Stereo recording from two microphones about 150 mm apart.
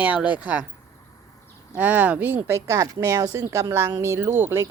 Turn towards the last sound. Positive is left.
turn(degrees=-15)  # may be behind; listen again after turning